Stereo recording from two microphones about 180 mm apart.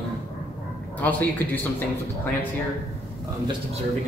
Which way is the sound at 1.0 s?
10° left (ahead or behind).